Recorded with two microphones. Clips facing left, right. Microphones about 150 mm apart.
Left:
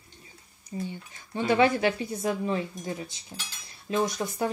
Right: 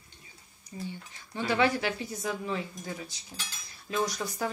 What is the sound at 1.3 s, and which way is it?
Speech, 20° left (ahead or behind).